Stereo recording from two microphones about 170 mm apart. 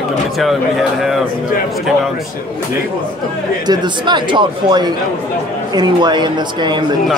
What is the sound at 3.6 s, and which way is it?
Speech, 25° right (ahead or behind).